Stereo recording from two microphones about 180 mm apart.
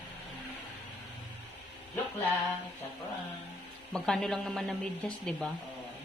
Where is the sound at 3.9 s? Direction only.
5° left (ahead or behind).